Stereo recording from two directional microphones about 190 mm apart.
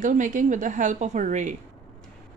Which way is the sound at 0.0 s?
40° right (ahead or behind).